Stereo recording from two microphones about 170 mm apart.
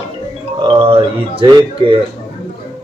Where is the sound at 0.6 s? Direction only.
30° right (ahead or behind).